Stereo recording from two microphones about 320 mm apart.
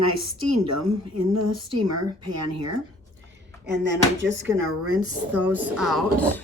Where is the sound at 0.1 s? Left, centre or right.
Right.